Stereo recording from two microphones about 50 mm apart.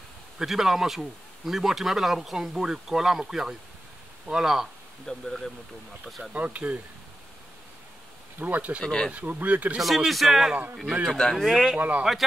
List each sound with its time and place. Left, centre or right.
0.4 s speech: centre
5.0 s speech: centre
6.3 s speech: right
8.4 s speech: right
8.8 s speech: centre
9.1 s speech: right
9.8 s speech: centre
11.1 s speech: centre
11.4 s speech: centre